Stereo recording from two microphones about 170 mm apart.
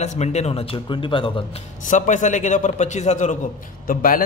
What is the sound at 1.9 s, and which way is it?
A man's voice, 45° left (ahead or behind).